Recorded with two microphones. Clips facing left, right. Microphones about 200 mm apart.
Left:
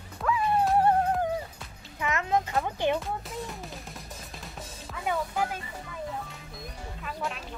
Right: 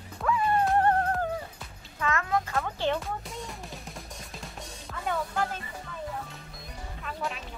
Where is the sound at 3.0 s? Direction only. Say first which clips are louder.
Left 2 dB; centre (ahead or behind).